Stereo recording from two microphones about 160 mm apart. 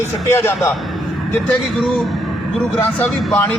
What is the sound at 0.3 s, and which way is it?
Speech, 15° left (ahead or behind).